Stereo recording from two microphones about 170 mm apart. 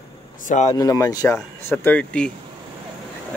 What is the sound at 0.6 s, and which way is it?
Speech, 20° left (ahead or behind).